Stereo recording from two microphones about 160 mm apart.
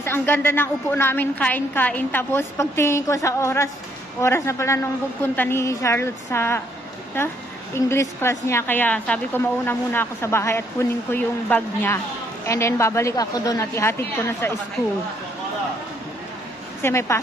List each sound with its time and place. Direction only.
0.0 s a woman's voice: 15° left (ahead or behind)
7.7 s a woman's voice: 15° left (ahead or behind)
16.8 s a woman's voice: 15° left (ahead or behind)